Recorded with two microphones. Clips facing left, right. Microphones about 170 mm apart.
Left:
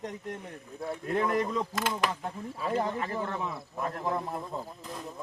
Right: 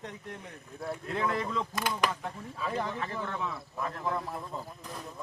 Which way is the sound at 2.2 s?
35° left (ahead or behind).